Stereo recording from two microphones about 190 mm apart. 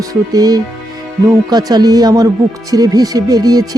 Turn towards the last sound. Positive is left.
turn(degrees=-20)  # may be behind; listen again after turning